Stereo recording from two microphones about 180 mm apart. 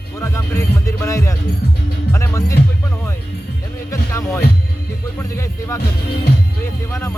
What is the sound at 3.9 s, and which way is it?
Music, 15° left (ahead or behind).